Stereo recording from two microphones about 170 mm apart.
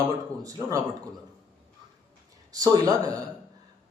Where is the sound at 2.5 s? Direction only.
20° right (ahead or behind).